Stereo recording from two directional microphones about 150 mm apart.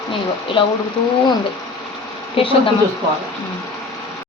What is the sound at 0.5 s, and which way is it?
Speech, 35° left (ahead or behind).